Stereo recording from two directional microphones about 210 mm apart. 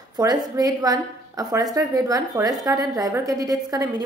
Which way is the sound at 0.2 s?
15° right (ahead or behind).